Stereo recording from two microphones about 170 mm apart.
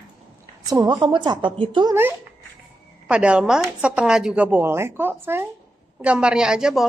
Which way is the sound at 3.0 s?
5° right (ahead or behind).